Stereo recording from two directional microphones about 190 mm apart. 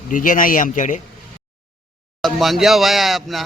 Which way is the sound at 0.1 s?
45° left (ahead or behind).